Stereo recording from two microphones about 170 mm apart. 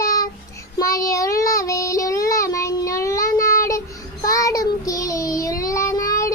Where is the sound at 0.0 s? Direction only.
20° left (ahead or behind).